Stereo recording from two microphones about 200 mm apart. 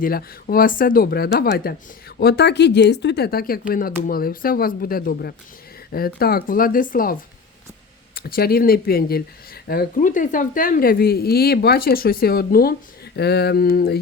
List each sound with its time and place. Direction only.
0.0 s a woman's voice: 45° left (ahead or behind)